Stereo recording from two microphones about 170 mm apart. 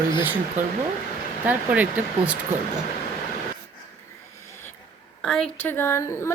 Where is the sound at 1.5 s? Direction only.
10° right (ahead or behind).